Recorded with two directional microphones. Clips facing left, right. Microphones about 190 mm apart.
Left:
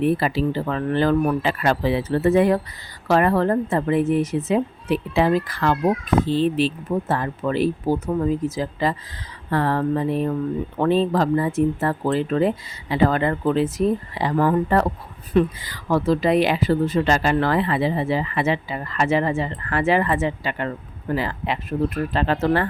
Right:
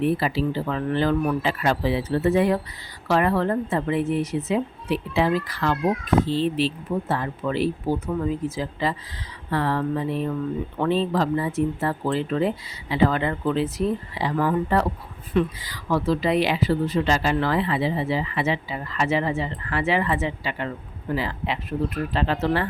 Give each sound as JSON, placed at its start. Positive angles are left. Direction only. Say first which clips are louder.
{"t": 0.0, "sound": "speech", "louder": "left 2 dB", "side_deg": 50}